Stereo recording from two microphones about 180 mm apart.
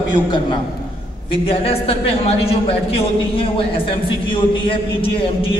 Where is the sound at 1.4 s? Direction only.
30° left (ahead or behind).